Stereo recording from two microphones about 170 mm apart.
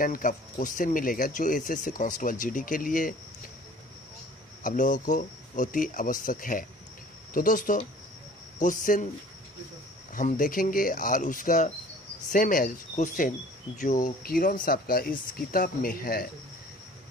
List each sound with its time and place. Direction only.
0.0 s speech: 55° left (ahead or behind)
4.6 s speech: 50° left (ahead or behind)
8.8 s speech: 50° left (ahead or behind)
10.1 s speech: 55° left (ahead or behind)